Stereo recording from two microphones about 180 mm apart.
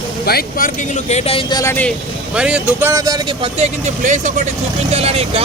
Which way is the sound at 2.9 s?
20° right (ahead or behind).